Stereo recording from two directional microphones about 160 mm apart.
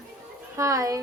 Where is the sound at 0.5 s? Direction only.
20° right (ahead or behind).